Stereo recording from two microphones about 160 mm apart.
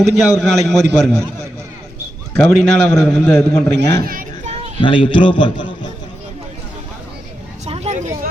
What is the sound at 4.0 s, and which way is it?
Children playing, 60° right (ahead or behind).